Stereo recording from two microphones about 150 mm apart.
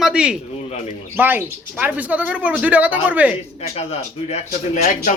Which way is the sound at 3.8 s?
45° left (ahead or behind).